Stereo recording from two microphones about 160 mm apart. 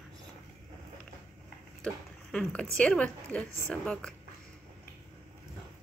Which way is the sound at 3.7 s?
5° left (ahead or behind).